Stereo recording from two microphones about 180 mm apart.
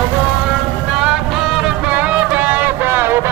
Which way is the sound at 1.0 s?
5° right (ahead or behind).